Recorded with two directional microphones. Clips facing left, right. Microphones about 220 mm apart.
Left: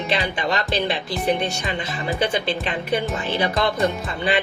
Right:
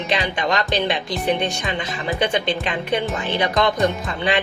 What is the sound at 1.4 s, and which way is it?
Speech, 5° left (ahead or behind).